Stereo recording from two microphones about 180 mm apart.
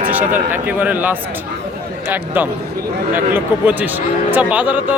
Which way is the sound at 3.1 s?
10° right (ahead or behind).